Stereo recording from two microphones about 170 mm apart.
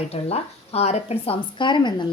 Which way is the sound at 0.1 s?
35° left (ahead or behind).